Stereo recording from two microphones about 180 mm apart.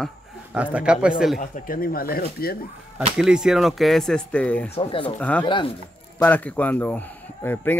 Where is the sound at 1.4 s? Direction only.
50° left (ahead or behind).